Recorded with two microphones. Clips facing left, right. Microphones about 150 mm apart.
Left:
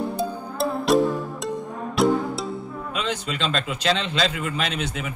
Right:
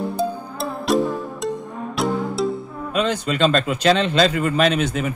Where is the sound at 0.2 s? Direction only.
Centre (ahead or behind).